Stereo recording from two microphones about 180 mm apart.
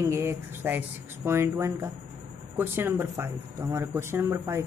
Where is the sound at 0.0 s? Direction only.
15° right (ahead or behind).